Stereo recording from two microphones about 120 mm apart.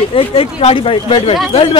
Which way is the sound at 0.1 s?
50° left (ahead or behind).